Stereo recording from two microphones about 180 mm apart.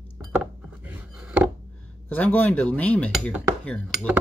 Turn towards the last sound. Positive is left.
turn(degrees=5)  # may be behind; listen again after turning